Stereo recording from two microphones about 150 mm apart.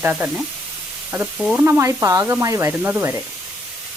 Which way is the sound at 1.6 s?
15° right (ahead or behind).